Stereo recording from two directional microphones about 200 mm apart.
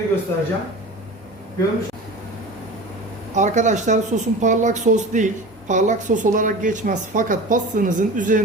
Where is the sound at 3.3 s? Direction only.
35° right (ahead or behind).